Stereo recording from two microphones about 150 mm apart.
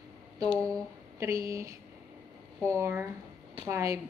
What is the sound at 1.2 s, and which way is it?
A woman's voice, 20° right (ahead or behind).